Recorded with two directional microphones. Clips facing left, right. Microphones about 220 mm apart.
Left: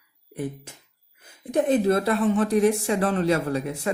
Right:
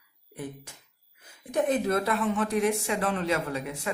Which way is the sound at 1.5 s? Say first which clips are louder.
Left 5 dB; 30° left (ahead or behind).